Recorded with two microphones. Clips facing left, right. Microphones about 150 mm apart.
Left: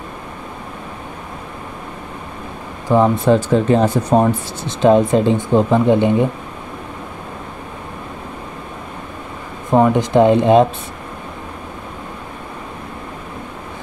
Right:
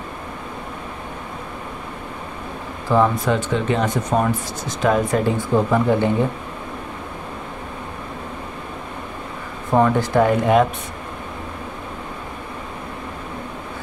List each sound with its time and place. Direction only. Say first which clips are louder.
2.9 s speech: left 3 dB; 15° left (ahead or behind)
3.3 s speech: left 7 dB; 35° left (ahead or behind); by 6.2 s 20° left (ahead or behind)
9.7 s speech: left 3 dB; 15° left (ahead or behind)